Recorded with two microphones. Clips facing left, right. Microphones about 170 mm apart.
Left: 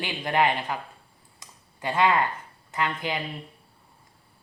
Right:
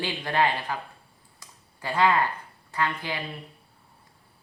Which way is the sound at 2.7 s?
20° left (ahead or behind).